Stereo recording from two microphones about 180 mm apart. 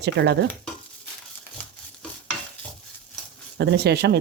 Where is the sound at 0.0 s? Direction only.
70° right (ahead or behind).